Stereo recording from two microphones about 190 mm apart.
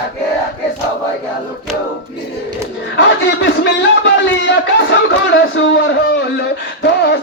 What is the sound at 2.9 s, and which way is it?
A man's voice, 65° left (ahead or behind).